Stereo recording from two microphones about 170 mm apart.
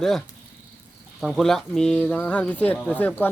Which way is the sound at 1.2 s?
Centre (ahead or behind).